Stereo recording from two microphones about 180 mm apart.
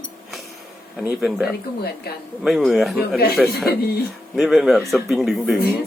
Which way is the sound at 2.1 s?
60° left (ahead or behind).